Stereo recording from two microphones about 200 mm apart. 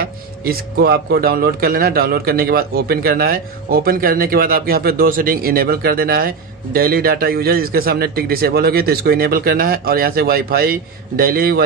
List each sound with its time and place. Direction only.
0.0 s speech: 50° right (ahead or behind)